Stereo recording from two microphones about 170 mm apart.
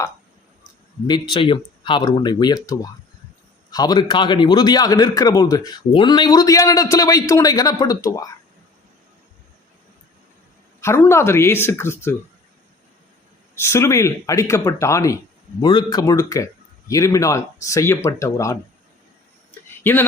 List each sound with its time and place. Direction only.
1.0 s a man's voice: 25° left (ahead or behind)
10.8 s speech: 15° left (ahead or behind)
13.6 s a man's voice: 15° left (ahead or behind)
19.5 s a sound: 10° left (ahead or behind)